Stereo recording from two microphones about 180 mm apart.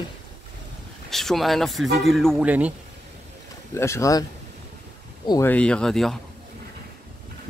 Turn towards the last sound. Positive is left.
turn(degrees=0)  # may be behind; listen again after turning